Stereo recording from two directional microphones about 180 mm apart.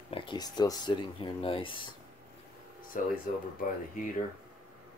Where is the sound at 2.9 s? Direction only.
50° left (ahead or behind).